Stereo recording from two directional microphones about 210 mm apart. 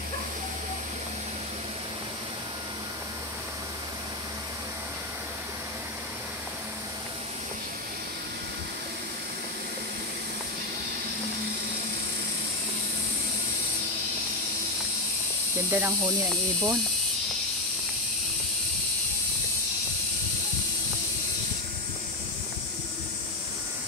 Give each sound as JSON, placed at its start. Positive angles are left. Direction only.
{"t": 15.7, "sound": "speech", "side_deg": -10}